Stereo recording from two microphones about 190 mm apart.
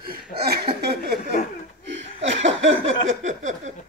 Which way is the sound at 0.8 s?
60° right (ahead or behind).